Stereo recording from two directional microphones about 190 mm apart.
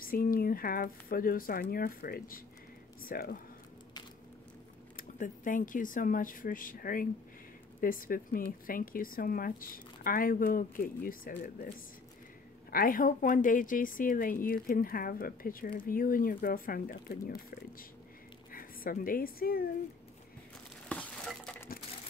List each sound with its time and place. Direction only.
0.0 s speech: 50° left (ahead or behind)
4.9 s speech: 45° left (ahead or behind)
12.7 s speech: 45° left (ahead or behind)
20.9 s stir: 5° left (ahead or behind)